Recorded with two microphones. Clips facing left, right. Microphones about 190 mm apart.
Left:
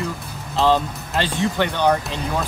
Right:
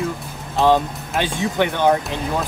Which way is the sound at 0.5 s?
15° right (ahead or behind).